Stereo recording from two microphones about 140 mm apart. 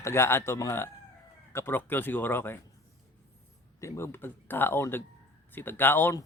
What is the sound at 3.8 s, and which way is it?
Speech, 20° left (ahead or behind).